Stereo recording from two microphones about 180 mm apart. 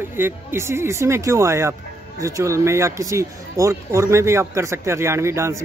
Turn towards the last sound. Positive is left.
turn(degrees=-15)  # may be behind; listen again after turning